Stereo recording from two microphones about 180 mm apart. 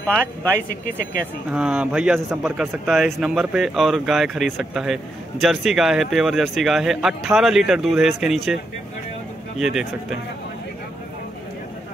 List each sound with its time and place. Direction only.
0.0 s speech: 10° left (ahead or behind)
0.6 s speech: 50° left (ahead or behind)
1.5 s speech: 5° right (ahead or behind)
9.6 s speech: centre (ahead or behind)